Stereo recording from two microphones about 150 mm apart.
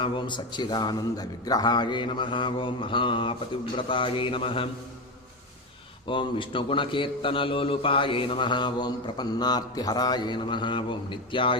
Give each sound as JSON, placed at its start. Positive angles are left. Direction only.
{"t": 0.0, "sound": "a man's voice", "side_deg": 30}
{"t": 6.1, "sound": "a man's voice", "side_deg": 35}